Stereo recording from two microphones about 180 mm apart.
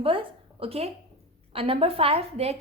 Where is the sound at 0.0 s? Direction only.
30° right (ahead or behind).